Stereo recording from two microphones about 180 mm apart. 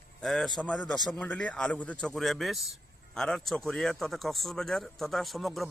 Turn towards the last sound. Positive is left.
turn(degrees=0)  # may be behind; listen again after turning